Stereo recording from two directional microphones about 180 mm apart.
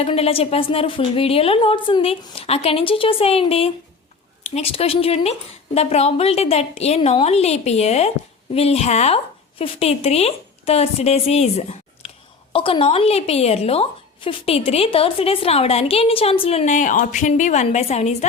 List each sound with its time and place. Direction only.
0.0 s a woman's voice: 35° left (ahead or behind)